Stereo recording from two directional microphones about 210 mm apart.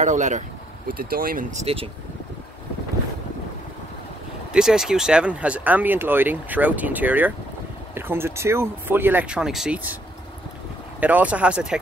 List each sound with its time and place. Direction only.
0.0 s speech: 35° right (ahead or behind)
4.5 s speech: centre (ahead or behind)
11.0 s speech: 5° right (ahead or behind)